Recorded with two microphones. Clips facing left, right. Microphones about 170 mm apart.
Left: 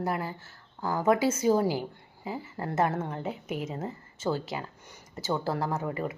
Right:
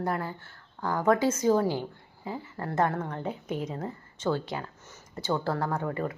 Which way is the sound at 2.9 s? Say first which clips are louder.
Left 1 dB; 25° left (ahead or behind).